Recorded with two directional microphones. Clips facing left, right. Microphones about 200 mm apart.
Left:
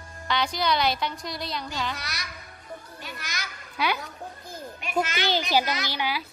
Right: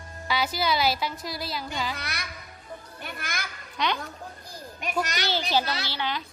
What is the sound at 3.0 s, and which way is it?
Children playing, 55° right (ahead or behind).